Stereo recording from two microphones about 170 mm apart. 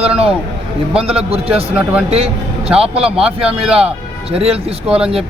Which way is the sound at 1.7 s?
5° right (ahead or behind).